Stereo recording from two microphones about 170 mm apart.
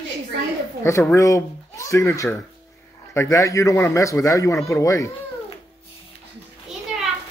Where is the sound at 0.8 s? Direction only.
15° left (ahead or behind).